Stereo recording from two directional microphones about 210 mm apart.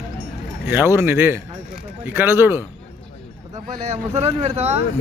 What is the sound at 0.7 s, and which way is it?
Speech, 10° right (ahead or behind).